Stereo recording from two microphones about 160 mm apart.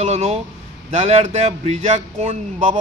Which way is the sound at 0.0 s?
40° right (ahead or behind).